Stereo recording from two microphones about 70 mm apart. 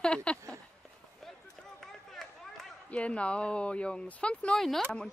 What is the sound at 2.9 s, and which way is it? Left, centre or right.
Speech, centre.